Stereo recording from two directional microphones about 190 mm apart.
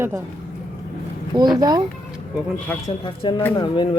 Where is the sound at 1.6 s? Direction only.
20° right (ahead or behind).